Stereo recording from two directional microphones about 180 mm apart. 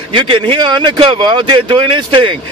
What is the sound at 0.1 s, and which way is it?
Speech, 30° right (ahead or behind).